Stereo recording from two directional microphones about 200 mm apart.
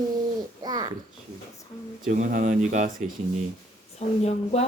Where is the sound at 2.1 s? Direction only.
40° right (ahead or behind).